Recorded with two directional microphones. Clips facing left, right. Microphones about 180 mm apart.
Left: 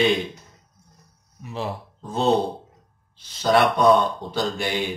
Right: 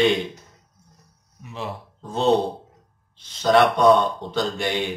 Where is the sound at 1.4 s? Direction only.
35° left (ahead or behind).